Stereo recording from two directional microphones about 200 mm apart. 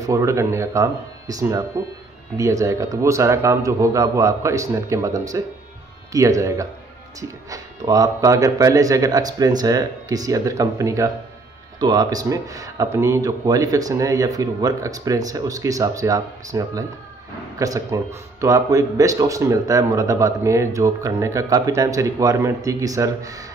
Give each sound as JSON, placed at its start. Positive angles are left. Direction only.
{"t": 0.0, "sound": "speech", "side_deg": -15}